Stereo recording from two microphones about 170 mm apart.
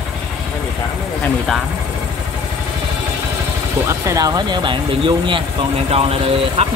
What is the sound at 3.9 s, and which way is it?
Speech, 20° right (ahead or behind).